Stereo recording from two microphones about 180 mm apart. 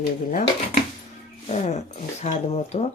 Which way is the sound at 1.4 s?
40° left (ahead or behind).